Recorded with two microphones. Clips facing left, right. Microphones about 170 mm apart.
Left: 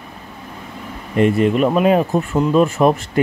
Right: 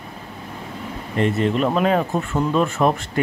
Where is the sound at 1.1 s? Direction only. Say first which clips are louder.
Left 5 dB; 15° left (ahead or behind).